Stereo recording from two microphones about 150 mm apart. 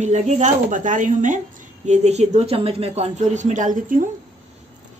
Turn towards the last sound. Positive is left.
turn(degrees=-65)  # may be behind; listen again after turning